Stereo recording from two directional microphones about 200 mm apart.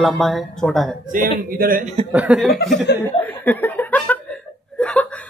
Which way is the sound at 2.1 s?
5° right (ahead or behind).